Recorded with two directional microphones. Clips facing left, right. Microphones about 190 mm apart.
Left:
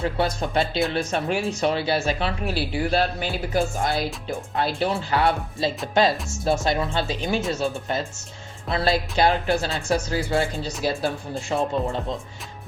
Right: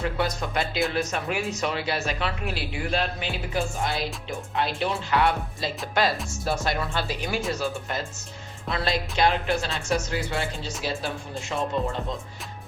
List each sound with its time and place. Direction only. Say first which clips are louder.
0.0 s speech: left 3 dB; 30° left (ahead or behind)